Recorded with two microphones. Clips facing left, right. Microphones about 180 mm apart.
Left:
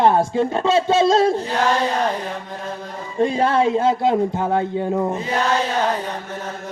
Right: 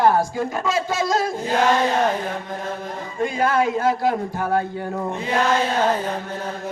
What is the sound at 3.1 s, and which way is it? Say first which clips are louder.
Speech: left 3 dB; 30° left (ahead or behind).